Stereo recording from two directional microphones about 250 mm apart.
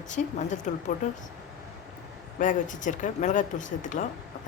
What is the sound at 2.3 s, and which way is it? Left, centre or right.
Speech, left.